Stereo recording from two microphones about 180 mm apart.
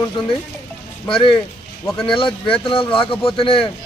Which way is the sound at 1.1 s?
30° left (ahead or behind).